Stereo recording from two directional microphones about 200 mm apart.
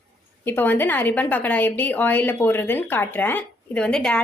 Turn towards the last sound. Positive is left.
turn(degrees=5)  # may be behind; listen again after turning